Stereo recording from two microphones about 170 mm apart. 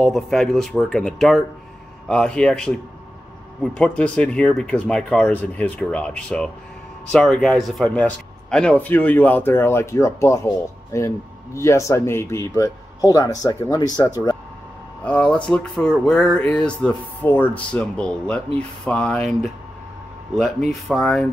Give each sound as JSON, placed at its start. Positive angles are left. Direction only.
{"t": 0.0, "sound": "speech", "side_deg": 5}
{"t": 15.0, "sound": "speech", "side_deg": 5}
{"t": 20.7, "sound": "speech", "side_deg": 0}